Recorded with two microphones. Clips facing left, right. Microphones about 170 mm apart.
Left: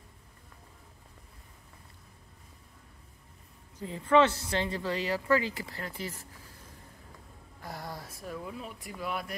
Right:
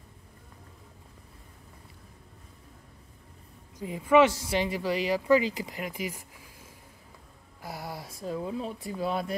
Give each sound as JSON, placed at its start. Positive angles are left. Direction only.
{"t": 3.7, "sound": "speech", "side_deg": -15}